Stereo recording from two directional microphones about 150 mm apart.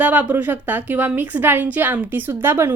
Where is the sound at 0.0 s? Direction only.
10° right (ahead or behind).